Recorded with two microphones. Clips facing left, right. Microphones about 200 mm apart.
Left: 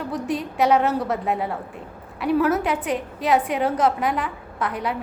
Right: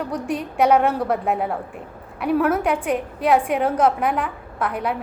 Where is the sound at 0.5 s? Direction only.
55° right (ahead or behind).